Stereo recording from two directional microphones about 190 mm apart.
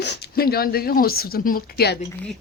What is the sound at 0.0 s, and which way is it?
Speech, 60° left (ahead or behind).